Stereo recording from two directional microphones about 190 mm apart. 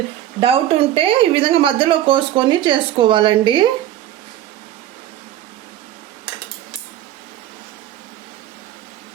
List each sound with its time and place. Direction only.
0.3 s speech: 30° right (ahead or behind)